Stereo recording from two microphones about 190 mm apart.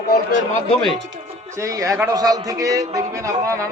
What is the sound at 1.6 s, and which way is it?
A man's voice, 15° right (ahead or behind).